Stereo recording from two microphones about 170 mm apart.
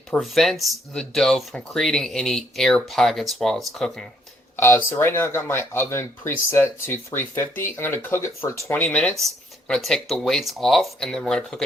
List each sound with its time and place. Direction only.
0.1 s speech: centre (ahead or behind)
4.5 s speech: 15° left (ahead or behind)